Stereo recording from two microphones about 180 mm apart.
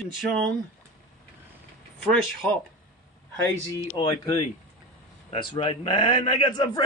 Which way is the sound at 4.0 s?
30° left (ahead or behind).